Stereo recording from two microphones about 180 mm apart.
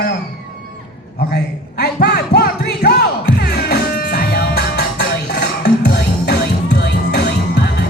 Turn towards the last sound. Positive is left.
turn(degrees=70)  # may be behind; listen again after turning